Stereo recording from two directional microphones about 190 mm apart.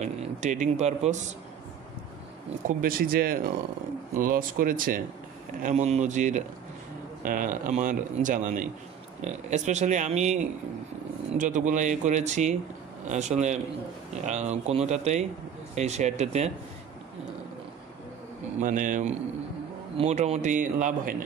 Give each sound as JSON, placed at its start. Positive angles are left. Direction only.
{"t": 0.0, "sound": "speech", "side_deg": -40}
{"t": 2.8, "sound": "a man's voice", "side_deg": -50}
{"t": 18.6, "sound": "a man's voice", "side_deg": -45}